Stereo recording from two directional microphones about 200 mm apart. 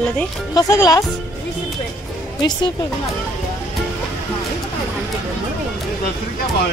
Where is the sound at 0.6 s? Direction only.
15° left (ahead or behind).